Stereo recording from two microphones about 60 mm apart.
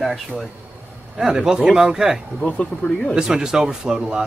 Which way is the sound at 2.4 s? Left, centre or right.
Centre.